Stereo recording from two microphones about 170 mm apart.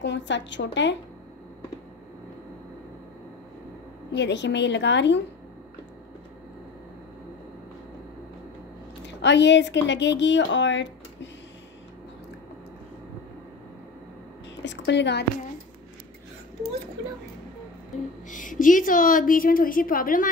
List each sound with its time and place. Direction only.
0.0 s speech: 90° left
4.1 s speech: 90° left
9.0 s speech: 90° left
14.6 s a woman's voice: 90° left
18.3 s a woman's voice: 50° left (ahead or behind)